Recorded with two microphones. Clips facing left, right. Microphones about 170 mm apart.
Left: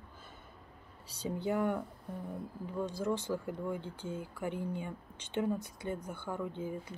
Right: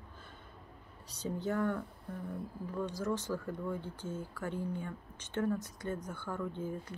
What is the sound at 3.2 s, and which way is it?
Speech, 15° left (ahead or behind).